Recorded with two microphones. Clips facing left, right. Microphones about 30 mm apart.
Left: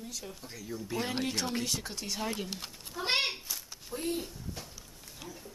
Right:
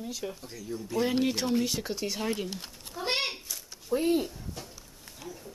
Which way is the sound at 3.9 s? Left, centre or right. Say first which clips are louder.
Right 9 dB; centre.